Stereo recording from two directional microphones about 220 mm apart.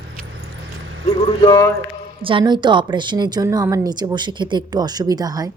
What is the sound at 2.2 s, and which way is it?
A woman's voice, 25° right (ahead or behind).